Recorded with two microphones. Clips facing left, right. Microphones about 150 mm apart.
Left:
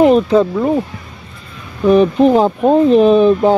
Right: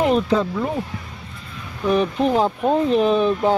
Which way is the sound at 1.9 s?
60° left (ahead or behind).